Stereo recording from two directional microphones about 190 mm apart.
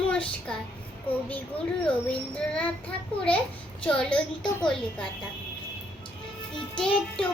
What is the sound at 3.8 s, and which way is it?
Child singing, 5° left (ahead or behind).